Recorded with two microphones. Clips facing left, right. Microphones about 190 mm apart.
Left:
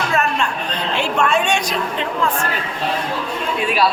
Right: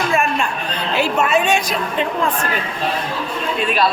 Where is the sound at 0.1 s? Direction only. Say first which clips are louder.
Right 1 dB; 10° right (ahead or behind).